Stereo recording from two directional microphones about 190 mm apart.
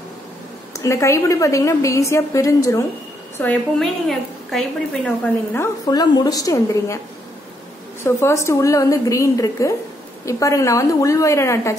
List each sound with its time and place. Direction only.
0.7 s a woman's voice: 15° left (ahead or behind)
3.3 s a woman's voice: 5° left (ahead or behind)
8.0 s a woman's voice: 15° left (ahead or behind)